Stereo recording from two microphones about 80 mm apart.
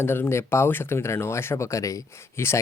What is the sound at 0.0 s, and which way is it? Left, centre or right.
Speech, left.